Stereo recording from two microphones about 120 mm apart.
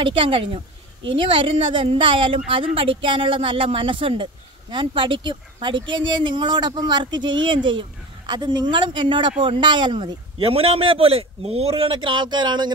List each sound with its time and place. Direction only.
0.0 s speech: 45° right (ahead or behind)